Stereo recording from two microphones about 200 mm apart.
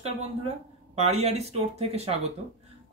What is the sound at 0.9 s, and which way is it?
Speech, 30° right (ahead or behind).